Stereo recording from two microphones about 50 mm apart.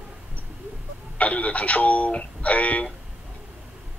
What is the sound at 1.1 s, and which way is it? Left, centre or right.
Speech, left.